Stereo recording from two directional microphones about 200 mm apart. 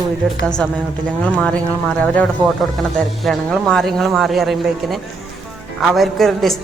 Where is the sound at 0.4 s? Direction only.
5° left (ahead or behind).